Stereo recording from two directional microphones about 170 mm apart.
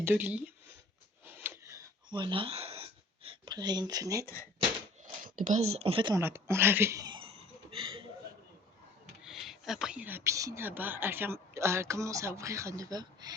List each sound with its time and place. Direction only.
0.0 s speech: 10° right (ahead or behind)
1.2 s a sound: 10° right (ahead or behind); by 2.8 s 35° right (ahead or behind)
3.2 s speech: 25° right (ahead or behind)
5.2 s speech: 50° right (ahead or behind); by 6.1 s 30° right (ahead or behind)
6.1 s speech: 15° right (ahead or behind); by 8.0 s 35° right (ahead or behind)
9.2 s speech: centre (ahead or behind); by 13.3 s 25° right (ahead or behind)